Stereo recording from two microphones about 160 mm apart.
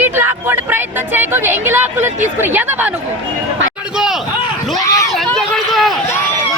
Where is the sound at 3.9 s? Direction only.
5° right (ahead or behind).